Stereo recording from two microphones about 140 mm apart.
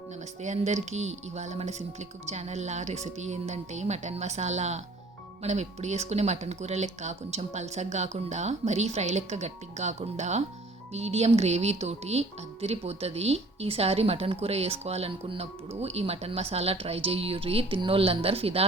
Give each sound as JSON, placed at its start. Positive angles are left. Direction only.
{"t": 0.4, "sound": "speech", "side_deg": -55}